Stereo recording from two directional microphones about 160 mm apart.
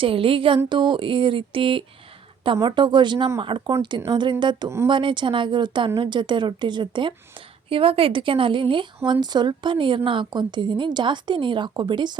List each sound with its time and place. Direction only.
0.0 s a woman's voice: 35° right (ahead or behind)